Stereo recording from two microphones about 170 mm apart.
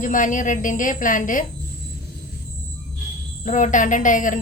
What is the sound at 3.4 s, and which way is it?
Speech, 45° left (ahead or behind).